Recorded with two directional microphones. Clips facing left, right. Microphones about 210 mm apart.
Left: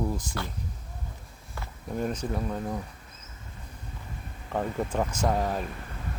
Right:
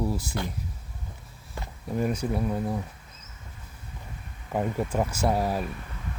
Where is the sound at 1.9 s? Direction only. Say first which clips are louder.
Right 3 dB; 10° right (ahead or behind).